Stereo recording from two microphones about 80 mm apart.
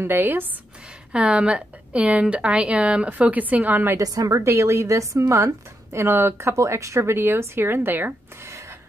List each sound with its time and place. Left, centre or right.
0.0 s speech: right
1.1 s a woman's voice: centre
3.9 s a woman's voice: right